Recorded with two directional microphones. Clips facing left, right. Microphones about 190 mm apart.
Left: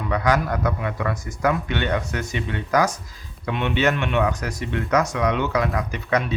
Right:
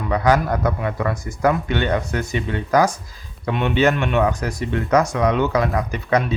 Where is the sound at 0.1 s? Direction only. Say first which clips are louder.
Right 4 dB; 30° right (ahead or behind).